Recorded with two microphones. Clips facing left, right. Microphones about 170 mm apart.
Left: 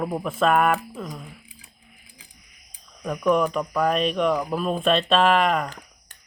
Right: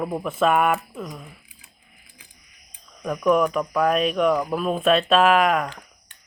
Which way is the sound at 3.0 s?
5° left (ahead or behind).